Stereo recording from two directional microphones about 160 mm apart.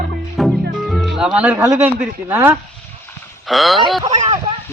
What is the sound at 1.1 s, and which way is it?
Speech, 5° right (ahead or behind).